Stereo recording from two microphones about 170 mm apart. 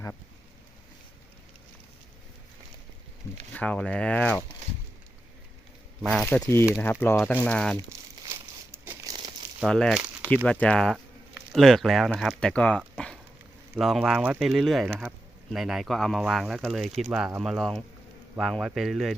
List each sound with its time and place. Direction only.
3.5 s speech: 5° left (ahead or behind)
6.0 s speech: centre (ahead or behind)
6.2 s speech: 15° left (ahead or behind)
7.8 s crumpling: 20° right (ahead or behind)
9.6 s speech: 5° left (ahead or behind)